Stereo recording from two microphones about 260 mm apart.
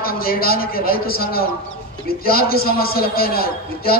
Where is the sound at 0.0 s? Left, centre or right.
Left.